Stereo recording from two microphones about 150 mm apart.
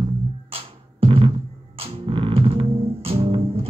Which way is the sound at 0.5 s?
40° right (ahead or behind).